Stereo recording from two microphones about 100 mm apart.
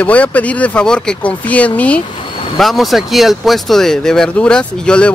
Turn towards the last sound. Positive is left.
turn(degrees=10)  # may be behind; listen again after turning